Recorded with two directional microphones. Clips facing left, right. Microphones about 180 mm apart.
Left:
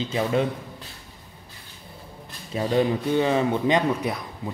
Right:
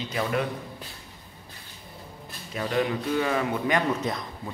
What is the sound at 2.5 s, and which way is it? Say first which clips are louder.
A man's voice: left 4 dB; 30° left (ahead or behind).